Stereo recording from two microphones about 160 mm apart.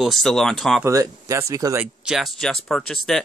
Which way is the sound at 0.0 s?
Centre (ahead or behind).